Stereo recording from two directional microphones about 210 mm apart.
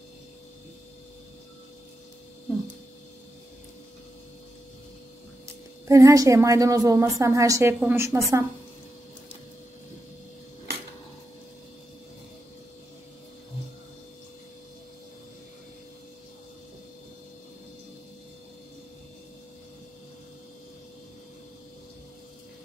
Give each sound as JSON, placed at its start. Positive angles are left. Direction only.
{"t": 5.9, "sound": "a woman's voice", "side_deg": -15}